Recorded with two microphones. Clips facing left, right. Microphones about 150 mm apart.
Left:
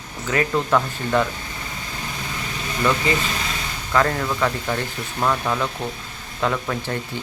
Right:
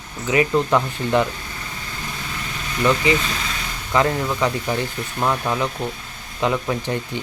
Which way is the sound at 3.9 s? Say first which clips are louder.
Right 1 dB; 15° right (ahead or behind).